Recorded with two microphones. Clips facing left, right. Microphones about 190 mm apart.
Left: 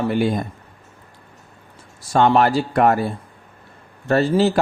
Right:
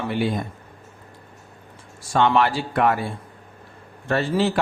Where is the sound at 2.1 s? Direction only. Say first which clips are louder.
Left 4 dB; 40° left (ahead or behind).